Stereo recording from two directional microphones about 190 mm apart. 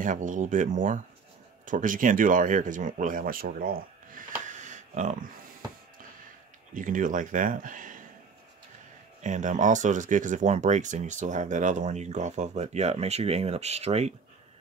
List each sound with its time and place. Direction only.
0.0 s speech: 45° right (ahead or behind)
4.5 s a sound: 40° right (ahead or behind)
6.7 s speech: 45° right (ahead or behind)
9.2 s speech: 40° right (ahead or behind)